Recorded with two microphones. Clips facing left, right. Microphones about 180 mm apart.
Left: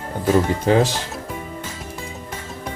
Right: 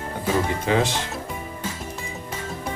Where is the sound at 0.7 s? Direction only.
40° left (ahead or behind).